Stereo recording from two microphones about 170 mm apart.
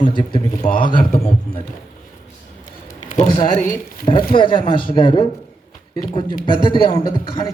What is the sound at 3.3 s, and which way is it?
A man's voice, 25° left (ahead or behind).